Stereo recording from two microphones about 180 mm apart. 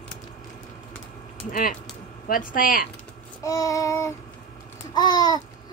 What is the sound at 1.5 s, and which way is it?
Speech, 50° left (ahead or behind).